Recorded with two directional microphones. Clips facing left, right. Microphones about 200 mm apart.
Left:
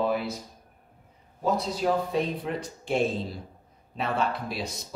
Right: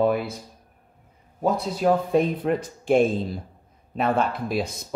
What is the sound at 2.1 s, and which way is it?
Speech, 55° right (ahead or behind).